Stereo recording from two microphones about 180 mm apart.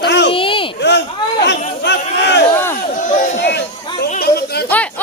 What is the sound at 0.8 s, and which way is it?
Speech, 75° left (ahead or behind).